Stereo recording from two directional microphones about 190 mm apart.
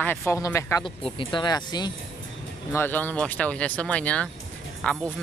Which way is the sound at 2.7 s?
10° left (ahead or behind).